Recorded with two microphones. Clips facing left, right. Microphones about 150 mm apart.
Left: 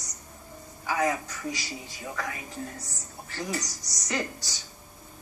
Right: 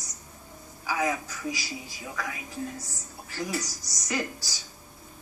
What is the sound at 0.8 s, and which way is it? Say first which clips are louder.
A woman's voice: left 1 dB; 5° right (ahead or behind).